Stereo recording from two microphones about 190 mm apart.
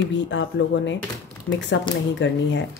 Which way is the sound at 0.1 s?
75° left (ahead or behind).